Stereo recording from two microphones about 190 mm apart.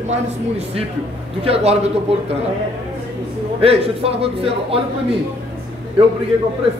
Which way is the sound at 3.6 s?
30° right (ahead or behind).